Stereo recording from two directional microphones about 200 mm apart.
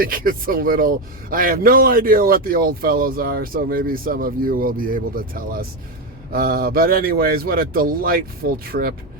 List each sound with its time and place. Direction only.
0.0 s speech: 45° right (ahead or behind)